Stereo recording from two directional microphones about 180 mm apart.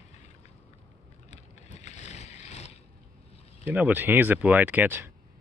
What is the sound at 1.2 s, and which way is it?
Vehicle, 40° left (ahead or behind).